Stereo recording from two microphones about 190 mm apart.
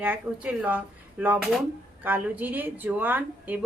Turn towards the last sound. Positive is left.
turn(degrees=-10)  # may be behind; listen again after turning